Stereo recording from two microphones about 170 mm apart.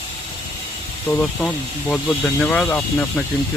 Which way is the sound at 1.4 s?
Centre (ahead or behind).